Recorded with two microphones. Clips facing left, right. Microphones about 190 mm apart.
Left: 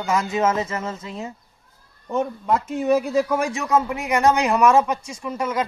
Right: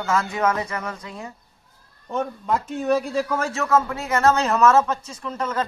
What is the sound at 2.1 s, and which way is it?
A man's voice, 5° left (ahead or behind).